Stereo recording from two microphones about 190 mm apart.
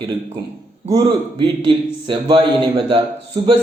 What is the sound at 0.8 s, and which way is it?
A man's voice, 25° right (ahead or behind).